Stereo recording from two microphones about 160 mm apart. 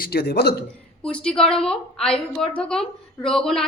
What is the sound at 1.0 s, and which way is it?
A woman's voice, 5° left (ahead or behind).